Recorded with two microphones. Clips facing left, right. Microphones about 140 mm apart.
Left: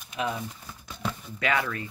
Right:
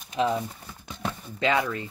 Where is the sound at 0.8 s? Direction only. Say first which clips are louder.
Right 1 dB; 20° right (ahead or behind).